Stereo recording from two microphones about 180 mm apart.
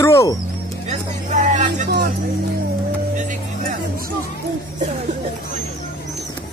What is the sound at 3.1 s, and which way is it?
Music, 45° right (ahead or behind).